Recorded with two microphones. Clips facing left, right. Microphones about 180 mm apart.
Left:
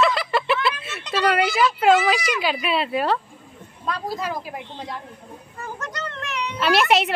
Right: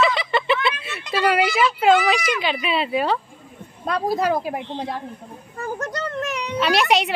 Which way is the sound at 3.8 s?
65° right (ahead or behind).